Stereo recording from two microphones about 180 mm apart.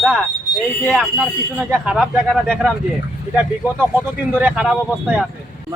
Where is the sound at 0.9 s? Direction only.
5° right (ahead or behind).